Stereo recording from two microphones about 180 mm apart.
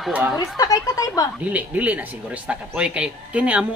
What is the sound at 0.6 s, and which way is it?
Speech, 20° left (ahead or behind).